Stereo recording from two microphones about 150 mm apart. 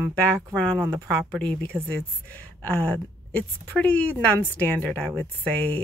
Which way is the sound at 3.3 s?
10° left (ahead or behind).